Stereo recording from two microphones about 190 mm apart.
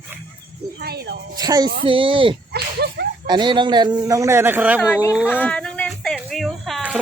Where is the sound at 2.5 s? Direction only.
55° right (ahead or behind).